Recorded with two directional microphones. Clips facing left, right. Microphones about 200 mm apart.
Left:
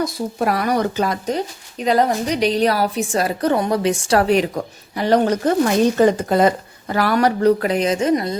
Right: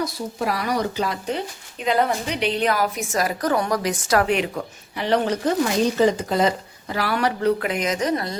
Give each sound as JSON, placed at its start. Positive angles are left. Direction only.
{"t": 0.0, "sound": "a woman's voice", "side_deg": 50}